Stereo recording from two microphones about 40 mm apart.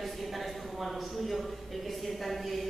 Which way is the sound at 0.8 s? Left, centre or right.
Centre.